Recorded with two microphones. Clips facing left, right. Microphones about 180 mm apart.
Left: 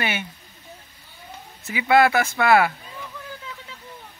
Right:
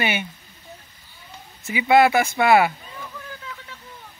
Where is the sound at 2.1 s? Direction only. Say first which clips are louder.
Right 1 dB; 15° right (ahead or behind).